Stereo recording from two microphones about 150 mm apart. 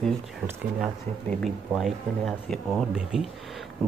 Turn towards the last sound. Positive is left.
turn(degrees=-5)  # may be behind; listen again after turning